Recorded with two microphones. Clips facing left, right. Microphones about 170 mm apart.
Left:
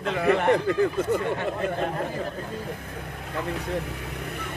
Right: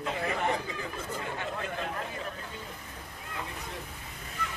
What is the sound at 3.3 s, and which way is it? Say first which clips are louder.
Speech: left 11 dB; 70° left (ahead or behind).